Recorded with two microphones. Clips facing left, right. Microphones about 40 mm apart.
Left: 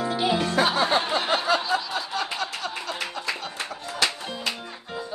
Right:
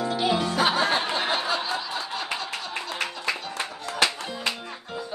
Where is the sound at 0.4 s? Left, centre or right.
Left.